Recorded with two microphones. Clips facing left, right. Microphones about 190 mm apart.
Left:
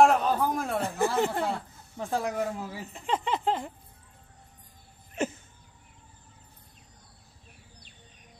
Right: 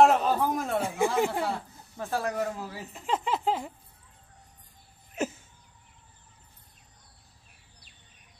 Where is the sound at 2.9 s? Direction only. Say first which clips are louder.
Even; 5° right (ahead or behind).